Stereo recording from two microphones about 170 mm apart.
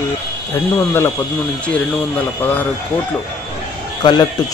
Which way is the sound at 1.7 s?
10° left (ahead or behind).